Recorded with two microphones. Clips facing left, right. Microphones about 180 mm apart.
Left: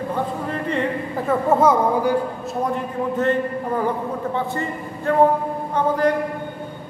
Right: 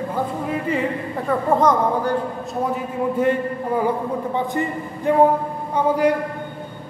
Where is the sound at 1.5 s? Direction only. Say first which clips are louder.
Left 1 dB; 10° left (ahead or behind).